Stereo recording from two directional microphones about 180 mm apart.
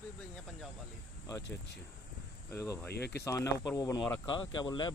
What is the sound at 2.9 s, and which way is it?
Speech, 65° left (ahead or behind).